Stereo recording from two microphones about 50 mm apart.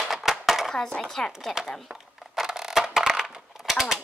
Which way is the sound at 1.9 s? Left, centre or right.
Centre.